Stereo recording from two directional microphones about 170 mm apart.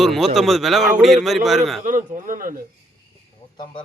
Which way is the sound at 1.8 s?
50° right (ahead or behind).